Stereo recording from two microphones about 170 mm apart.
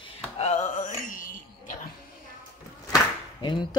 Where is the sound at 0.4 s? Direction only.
45° left (ahead or behind).